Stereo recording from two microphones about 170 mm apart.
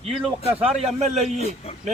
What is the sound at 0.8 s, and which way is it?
Speech, 40° right (ahead or behind).